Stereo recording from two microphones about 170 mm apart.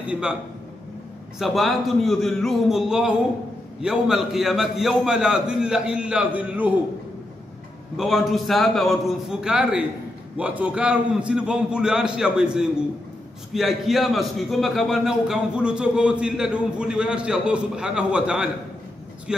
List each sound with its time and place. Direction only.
1.4 s a man's voice: centre (ahead or behind)
8.0 s a man's voice: centre (ahead or behind)